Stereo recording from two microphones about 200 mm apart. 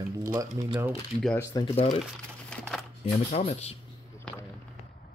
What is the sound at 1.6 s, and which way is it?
Speech, 25° left (ahead or behind).